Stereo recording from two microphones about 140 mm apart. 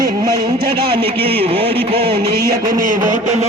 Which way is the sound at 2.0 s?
90° right.